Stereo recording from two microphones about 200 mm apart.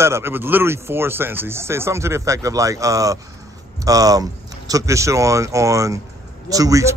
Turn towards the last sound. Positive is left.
turn(degrees=-15)  # may be behind; listen again after turning